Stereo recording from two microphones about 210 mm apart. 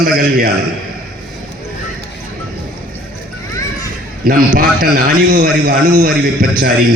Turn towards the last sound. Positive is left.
turn(degrees=-45)  # may be behind; listen again after turning